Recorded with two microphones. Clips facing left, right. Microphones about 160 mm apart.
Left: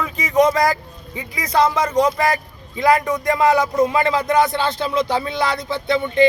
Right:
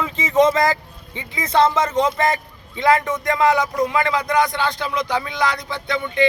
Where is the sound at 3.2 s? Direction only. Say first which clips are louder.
Left 1 dB; 20° left (ahead or behind).